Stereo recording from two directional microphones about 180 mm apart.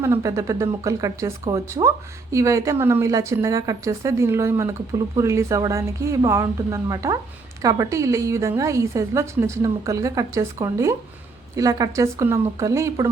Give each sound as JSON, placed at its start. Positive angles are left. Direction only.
{"t": 0.0, "sound": "a woman's voice", "side_deg": -15}